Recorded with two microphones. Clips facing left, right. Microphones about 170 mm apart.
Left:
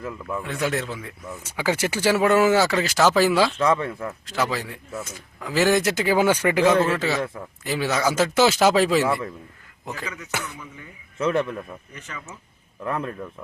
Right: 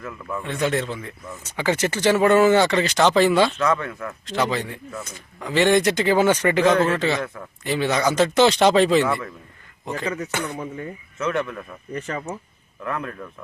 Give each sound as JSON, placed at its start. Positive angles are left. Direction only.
{"t": 0.3, "sound": "speech", "side_deg": 5}
{"t": 3.6, "sound": "speech", "side_deg": 30}
{"t": 4.3, "sound": "speech", "side_deg": 5}
{"t": 10.4, "sound": "speech", "side_deg": -50}
{"t": 11.2, "sound": "speech", "side_deg": 30}
{"t": 11.9, "sound": "speech", "side_deg": -55}
{"t": 12.8, "sound": "speech", "side_deg": 30}